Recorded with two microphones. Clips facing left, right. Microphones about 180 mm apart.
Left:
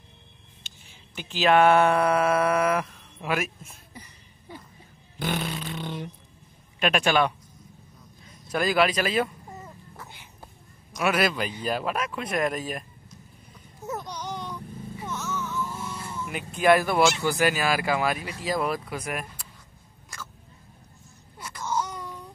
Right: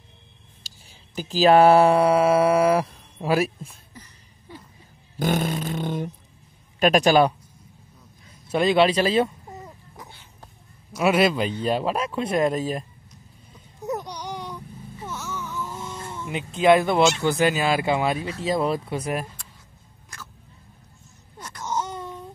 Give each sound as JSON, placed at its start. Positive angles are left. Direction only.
{"t": 0.7, "sound": "speech", "side_deg": -35}
{"t": 3.9, "sound": "a sound", "side_deg": 15}
{"t": 5.2, "sound": "a sound", "side_deg": -45}
{"t": 6.8, "sound": "speech", "side_deg": -40}
{"t": 8.5, "sound": "speech", "side_deg": -25}
{"t": 11.0, "sound": "speech", "side_deg": -25}
{"t": 13.8, "sound": "baby cry", "side_deg": -15}
{"t": 15.0, "sound": "speech", "side_deg": -10}
{"t": 21.4, "sound": "wail", "side_deg": 5}
{"t": 21.6, "sound": "a sound", "side_deg": -25}